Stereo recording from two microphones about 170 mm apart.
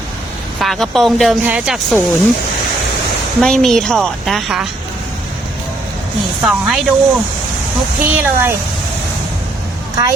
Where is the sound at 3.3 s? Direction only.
5° left (ahead or behind).